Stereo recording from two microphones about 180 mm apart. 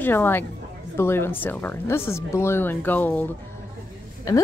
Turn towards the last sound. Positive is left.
turn(degrees=20)  # may be behind; listen again after turning